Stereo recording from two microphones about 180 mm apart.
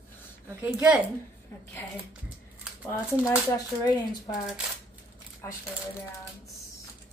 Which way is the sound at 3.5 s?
20° left (ahead or behind).